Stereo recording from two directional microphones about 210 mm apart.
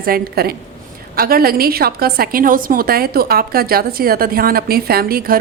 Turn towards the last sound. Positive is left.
turn(degrees=-45)  # may be behind; listen again after turning